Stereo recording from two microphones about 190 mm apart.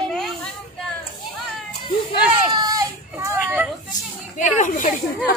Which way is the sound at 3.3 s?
10° right (ahead or behind).